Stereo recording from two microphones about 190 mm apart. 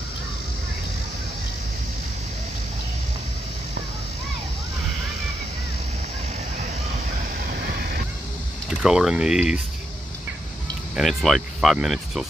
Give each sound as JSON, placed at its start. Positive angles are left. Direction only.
{"t": 7.3, "sound": "fowl", "side_deg": -60}
{"t": 8.6, "sound": "speech", "side_deg": -5}
{"t": 11.0, "sound": "speech", "side_deg": 0}